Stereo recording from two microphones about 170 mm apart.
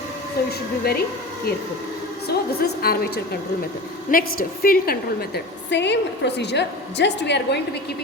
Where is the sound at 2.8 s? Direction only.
65° left (ahead or behind).